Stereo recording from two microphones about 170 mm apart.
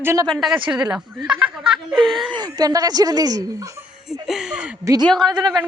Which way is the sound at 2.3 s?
25° right (ahead or behind).